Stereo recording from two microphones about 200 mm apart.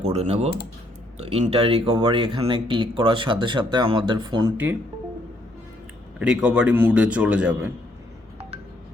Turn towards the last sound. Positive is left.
turn(degrees=-5)  # may be behind; listen again after turning